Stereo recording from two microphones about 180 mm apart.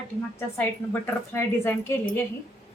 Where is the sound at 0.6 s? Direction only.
15° left (ahead or behind).